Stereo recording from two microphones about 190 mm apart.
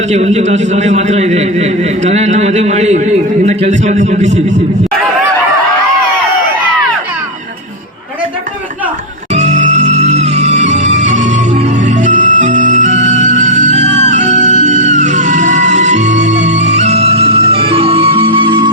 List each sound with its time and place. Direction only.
0.1 s a man's voice: 35° right (ahead or behind)
9.3 s music: 35° right (ahead or behind)